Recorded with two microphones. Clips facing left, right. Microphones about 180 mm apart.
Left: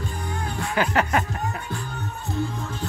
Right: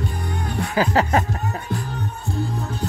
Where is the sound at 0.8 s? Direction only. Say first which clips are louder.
Right 3 dB; 30° right (ahead or behind).